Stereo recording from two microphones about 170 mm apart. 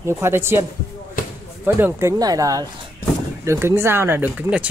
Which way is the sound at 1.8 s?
15° right (ahead or behind).